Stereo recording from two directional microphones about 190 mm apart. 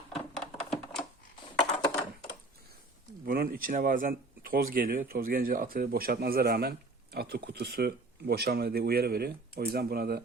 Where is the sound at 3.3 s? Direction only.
50° right (ahead or behind).